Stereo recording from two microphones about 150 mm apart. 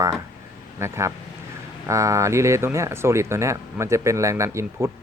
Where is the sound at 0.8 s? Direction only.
20° right (ahead or behind).